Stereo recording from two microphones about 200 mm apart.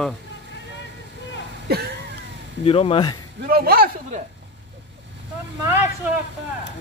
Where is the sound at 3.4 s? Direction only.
50° right (ahead or behind).